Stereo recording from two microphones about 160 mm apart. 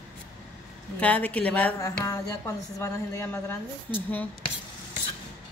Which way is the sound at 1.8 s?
20° left (ahead or behind).